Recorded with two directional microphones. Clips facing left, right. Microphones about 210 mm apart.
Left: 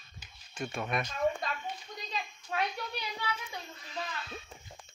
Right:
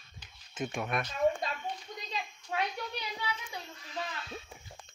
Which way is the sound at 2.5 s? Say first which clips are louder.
Even; 15° right (ahead or behind).